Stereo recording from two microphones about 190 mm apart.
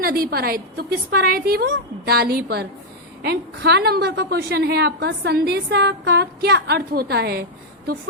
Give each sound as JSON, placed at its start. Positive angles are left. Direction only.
{"t": 0.0, "sound": "a woman's voice", "side_deg": -50}